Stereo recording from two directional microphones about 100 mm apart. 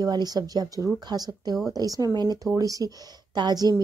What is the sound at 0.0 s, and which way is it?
Speech, 40° right (ahead or behind).